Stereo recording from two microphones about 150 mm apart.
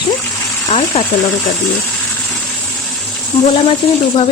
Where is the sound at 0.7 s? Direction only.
45° left (ahead or behind).